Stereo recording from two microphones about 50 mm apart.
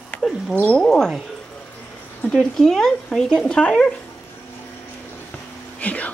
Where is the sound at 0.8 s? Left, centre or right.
Centre.